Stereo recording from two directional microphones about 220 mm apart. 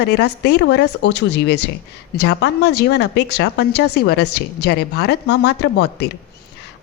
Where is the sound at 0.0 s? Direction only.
50° left (ahead or behind).